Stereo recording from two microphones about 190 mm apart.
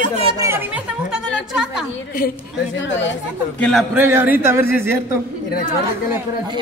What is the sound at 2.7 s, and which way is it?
Speech, 75° left (ahead or behind).